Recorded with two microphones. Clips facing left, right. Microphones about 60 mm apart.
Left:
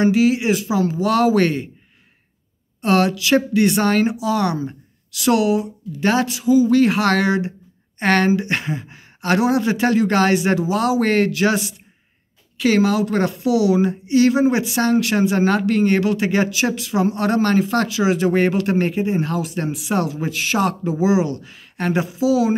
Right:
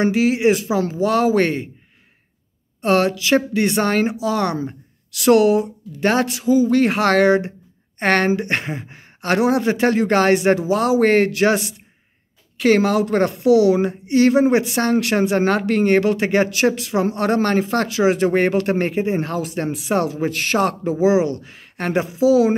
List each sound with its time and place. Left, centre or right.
0.0 s speech: right
2.8 s speech: right